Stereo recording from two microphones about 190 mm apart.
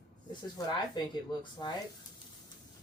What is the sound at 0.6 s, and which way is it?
Speech, 20° left (ahead or behind).